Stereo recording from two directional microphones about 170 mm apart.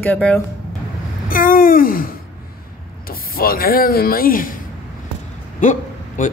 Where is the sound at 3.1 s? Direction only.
60° left (ahead or behind).